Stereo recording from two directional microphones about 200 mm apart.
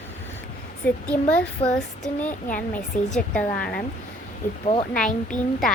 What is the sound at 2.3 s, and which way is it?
Speech, 45° left (ahead or behind).